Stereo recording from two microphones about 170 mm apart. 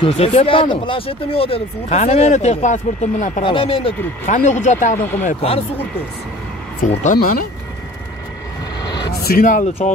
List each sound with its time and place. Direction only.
0.0 s speech: 35° left (ahead or behind)
3.4 s speech: 30° left (ahead or behind); by 4.9 s 45° left (ahead or behind)
4.9 s speech: 10° left (ahead or behind)
5.2 s speech: 40° left (ahead or behind)
6.9 s speech: 45° left (ahead or behind)
8.8 s a sound: 25° left (ahead or behind)
9.2 s speech: 55° left (ahead or behind)